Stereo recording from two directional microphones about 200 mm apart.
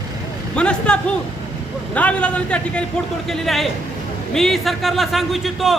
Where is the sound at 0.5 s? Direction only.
5° left (ahead or behind).